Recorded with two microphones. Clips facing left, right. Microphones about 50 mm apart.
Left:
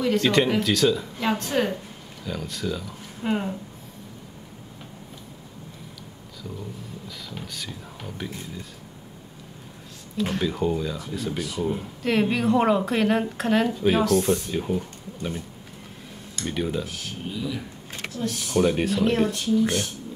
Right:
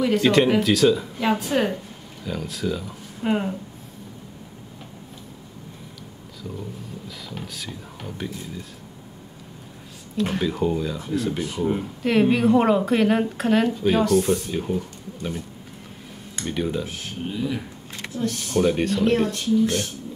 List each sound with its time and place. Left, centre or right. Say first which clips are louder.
0.0 s a woman's voice: right 3 dB; centre
7.1 s speech: right 1 dB; centre
10.1 s a woman's voice: right 2 dB; centre
11.3 s speech: right 3 dB; right
11.8 s a woman's voice: right 4 dB; centre
16.4 s a woman's voice: right 1 dB; centre
16.8 s speech: right 3 dB; right
18.2 s a woman's voice: right 1 dB; centre